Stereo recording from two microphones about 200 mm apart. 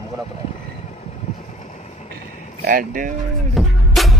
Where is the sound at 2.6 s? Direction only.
45° right (ahead or behind).